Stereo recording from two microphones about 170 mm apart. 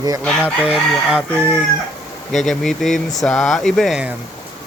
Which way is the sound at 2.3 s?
Centre (ahead or behind).